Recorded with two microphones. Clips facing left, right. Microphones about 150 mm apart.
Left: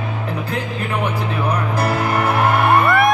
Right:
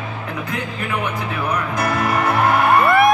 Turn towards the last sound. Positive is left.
turn(degrees=0)  # may be behind; listen again after turning